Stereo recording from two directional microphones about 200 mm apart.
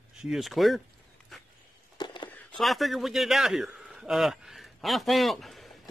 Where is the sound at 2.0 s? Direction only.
20° left (ahead or behind).